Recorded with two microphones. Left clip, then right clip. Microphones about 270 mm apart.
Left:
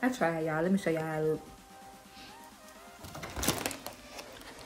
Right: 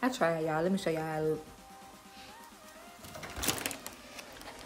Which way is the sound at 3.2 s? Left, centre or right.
Centre.